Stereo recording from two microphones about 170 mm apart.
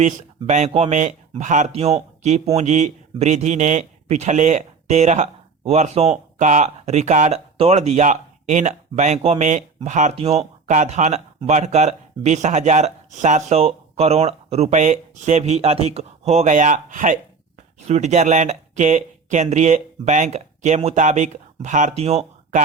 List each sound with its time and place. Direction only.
0.0 s speech: 45° right (ahead or behind)